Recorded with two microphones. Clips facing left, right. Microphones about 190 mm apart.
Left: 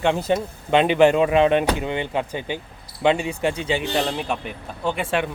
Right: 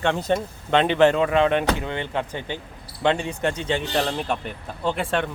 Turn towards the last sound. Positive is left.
turn(degrees=5)  # may be behind; listen again after turning